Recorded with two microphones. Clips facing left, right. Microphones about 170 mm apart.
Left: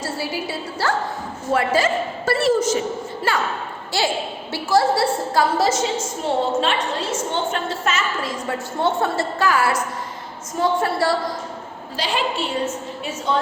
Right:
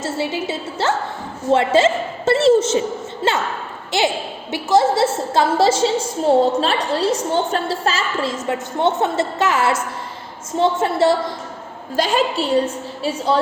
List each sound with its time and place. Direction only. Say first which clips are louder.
0.0 s a woman's voice: right 4 dB; 25° right (ahead or behind)
11.9 s a woman's voice: right 5 dB; 45° right (ahead or behind)